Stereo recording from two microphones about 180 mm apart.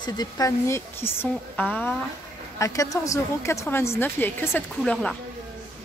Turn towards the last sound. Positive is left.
turn(degrees=5)  # may be behind; listen again after turning